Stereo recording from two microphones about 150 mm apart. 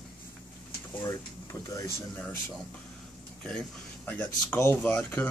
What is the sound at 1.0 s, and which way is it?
Speech, 20° left (ahead or behind).